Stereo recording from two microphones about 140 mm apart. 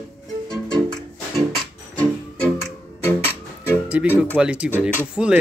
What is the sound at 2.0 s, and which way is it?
Music, 10° left (ahead or behind).